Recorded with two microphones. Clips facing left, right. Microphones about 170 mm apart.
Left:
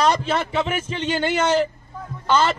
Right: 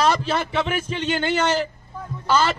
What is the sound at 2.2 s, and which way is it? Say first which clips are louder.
Speech: left 1 dB; 5° right (ahead or behind).